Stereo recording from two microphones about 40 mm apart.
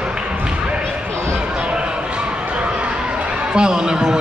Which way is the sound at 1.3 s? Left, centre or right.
Right.